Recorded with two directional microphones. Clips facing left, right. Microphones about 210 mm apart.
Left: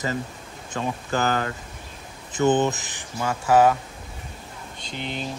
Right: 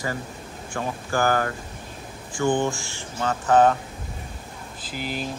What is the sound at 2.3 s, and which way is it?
Speech, 20° left (ahead or behind).